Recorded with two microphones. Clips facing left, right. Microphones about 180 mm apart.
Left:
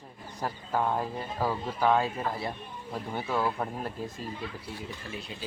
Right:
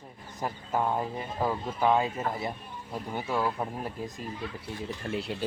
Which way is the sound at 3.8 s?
15° right (ahead or behind).